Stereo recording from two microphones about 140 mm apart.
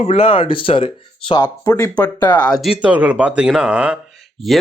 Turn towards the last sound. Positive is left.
turn(degrees=0)  # may be behind; listen again after turning